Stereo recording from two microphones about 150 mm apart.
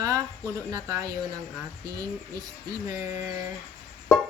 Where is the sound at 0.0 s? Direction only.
25° right (ahead or behind).